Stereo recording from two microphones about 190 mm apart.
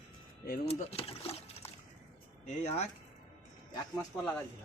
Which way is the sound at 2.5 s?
35° left (ahead or behind).